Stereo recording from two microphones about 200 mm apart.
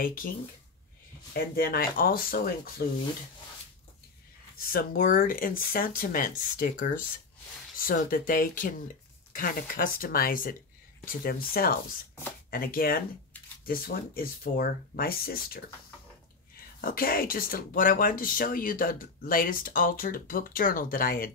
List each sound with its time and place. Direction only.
0.0 s speech: 45° left (ahead or behind)
1.3 s speech: 45° left (ahead or behind)
4.6 s speech: 45° left (ahead or behind)
16.8 s speech: 45° left (ahead or behind)